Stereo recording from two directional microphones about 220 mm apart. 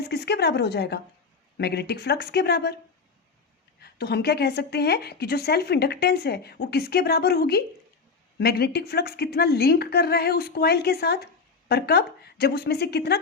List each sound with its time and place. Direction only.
0.1 s a woman's voice: 50° left (ahead or behind)
3.8 s a woman's voice: 45° left (ahead or behind)